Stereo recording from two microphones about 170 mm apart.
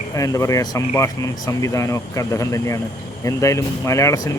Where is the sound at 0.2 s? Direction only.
20° left (ahead or behind).